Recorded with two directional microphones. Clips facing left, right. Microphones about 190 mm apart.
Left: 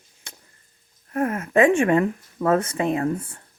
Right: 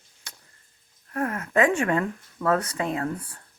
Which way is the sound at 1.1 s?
25° left (ahead or behind).